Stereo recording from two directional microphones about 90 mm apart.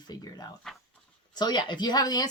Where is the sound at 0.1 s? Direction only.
45° left (ahead or behind).